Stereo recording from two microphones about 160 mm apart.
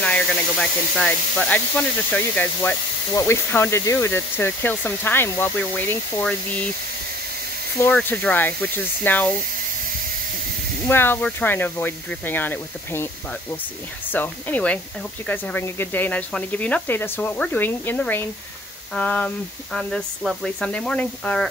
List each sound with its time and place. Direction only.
0.0 s speech: 5° left (ahead or behind)
7.8 s speech: 10° left (ahead or behind)
10.9 s speech: 15° left (ahead or behind)
14.1 s speech: 10° left (ahead or behind)